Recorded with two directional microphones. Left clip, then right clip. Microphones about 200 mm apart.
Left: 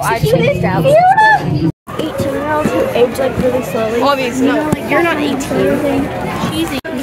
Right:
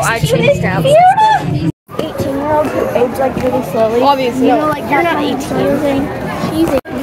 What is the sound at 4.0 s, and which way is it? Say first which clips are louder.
Speech: right 2 dB; 25° left (ahead or behind).